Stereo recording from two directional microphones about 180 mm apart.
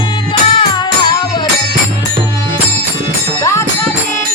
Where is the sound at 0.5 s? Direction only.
30° left (ahead or behind).